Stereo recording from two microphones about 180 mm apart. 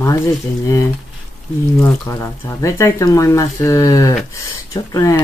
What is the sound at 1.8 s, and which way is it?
Speech, 15° left (ahead or behind).